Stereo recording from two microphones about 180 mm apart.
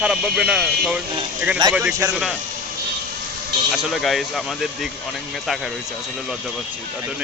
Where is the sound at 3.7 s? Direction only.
Centre (ahead or behind).